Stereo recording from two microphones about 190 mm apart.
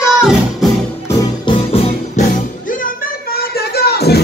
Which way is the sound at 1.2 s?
30° left (ahead or behind).